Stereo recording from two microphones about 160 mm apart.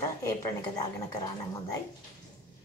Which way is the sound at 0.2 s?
25° left (ahead or behind).